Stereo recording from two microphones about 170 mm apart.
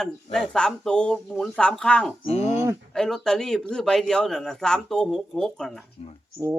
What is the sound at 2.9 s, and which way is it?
A man's voice, 5° left (ahead or behind).